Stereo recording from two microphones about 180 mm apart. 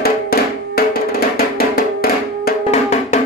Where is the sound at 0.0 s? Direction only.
60° left (ahead or behind).